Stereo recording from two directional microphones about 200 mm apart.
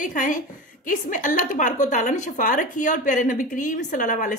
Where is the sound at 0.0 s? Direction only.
40° left (ahead or behind).